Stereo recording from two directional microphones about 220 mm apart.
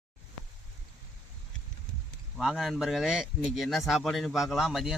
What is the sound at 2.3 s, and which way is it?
A man's voice, centre (ahead or behind).